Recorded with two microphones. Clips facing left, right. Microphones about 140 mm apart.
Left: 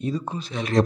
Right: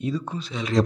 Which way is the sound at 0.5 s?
55° left (ahead or behind).